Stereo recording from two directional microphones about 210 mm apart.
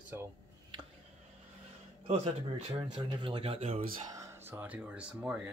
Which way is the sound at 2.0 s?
30° right (ahead or behind).